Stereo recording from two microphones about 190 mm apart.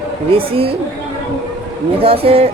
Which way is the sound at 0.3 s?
30° right (ahead or behind).